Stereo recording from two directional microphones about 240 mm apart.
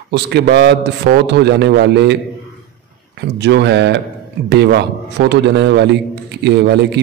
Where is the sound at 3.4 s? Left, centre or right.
Right.